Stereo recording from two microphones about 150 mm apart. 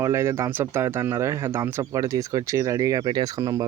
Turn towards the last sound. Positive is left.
turn(degrees=-25)  # may be behind; listen again after turning